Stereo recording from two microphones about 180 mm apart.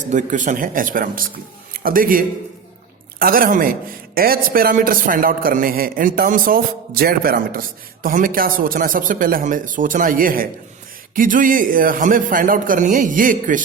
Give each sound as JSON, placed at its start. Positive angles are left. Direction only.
{"t": 0.0, "sound": "a man's voice", "side_deg": -45}